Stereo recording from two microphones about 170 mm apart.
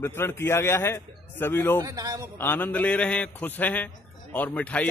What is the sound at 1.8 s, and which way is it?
Speech, 20° right (ahead or behind).